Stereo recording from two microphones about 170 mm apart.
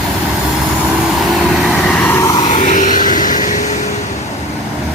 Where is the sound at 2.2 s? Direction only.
25° left (ahead or behind).